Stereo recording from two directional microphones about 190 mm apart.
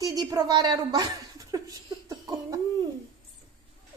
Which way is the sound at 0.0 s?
20° right (ahead or behind).